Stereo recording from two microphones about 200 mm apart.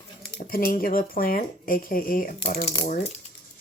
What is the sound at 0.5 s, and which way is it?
Speech, 45° left (ahead or behind).